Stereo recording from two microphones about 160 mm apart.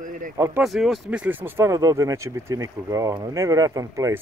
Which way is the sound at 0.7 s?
Centre (ahead or behind).